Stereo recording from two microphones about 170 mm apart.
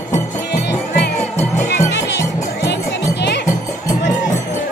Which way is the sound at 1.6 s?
90° left.